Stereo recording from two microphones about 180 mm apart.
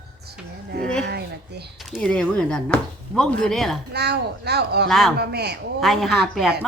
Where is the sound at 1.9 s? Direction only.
5° left (ahead or behind).